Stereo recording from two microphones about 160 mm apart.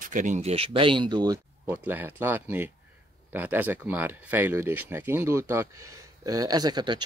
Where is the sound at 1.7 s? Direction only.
10° right (ahead or behind).